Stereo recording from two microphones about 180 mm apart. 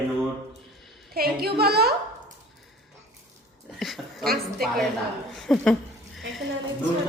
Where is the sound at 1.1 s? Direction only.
60° right (ahead or behind).